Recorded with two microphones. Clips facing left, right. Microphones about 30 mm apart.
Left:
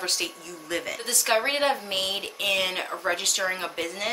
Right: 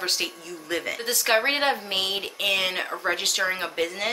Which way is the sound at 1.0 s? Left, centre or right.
Right.